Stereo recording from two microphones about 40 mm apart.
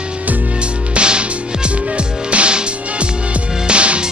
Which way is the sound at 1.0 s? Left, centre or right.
Right.